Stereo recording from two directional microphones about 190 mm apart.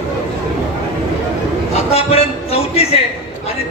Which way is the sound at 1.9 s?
30° left (ahead or behind).